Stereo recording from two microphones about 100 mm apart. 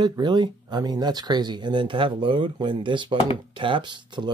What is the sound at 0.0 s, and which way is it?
Speech, 45° right (ahead or behind).